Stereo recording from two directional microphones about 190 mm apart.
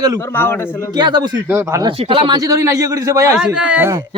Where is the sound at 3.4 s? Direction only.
5° right (ahead or behind).